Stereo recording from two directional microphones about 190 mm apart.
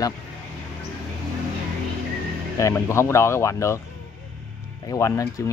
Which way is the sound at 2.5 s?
15° left (ahead or behind).